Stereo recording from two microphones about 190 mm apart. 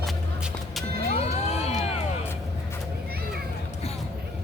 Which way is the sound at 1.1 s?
35° left (ahead or behind).